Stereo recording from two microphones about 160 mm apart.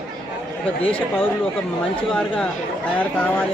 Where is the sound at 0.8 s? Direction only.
35° left (ahead or behind).